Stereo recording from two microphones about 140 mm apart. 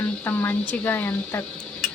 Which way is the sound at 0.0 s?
15° left (ahead or behind).